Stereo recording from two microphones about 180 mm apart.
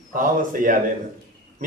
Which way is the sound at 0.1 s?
50° right (ahead or behind).